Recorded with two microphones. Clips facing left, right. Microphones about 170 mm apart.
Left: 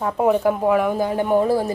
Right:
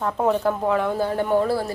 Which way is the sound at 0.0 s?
10° left (ahead or behind).